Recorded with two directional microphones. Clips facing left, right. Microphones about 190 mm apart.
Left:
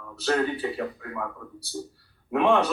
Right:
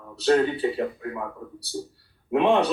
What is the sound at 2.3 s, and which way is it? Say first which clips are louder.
Speech: right 2 dB; 25° right (ahead or behind).